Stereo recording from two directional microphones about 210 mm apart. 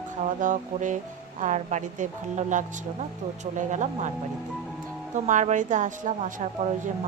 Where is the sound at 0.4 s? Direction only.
35° right (ahead or behind).